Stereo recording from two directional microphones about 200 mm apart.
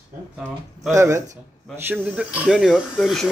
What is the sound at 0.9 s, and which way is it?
Speech, 15° right (ahead or behind).